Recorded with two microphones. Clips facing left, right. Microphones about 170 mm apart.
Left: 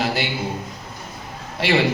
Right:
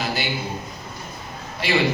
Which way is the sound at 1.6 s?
90° left.